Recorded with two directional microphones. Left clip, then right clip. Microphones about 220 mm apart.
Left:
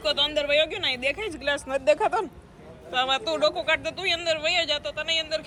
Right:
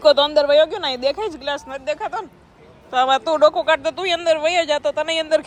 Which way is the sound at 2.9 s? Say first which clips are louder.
Right 8 dB; 15° right (ahead or behind).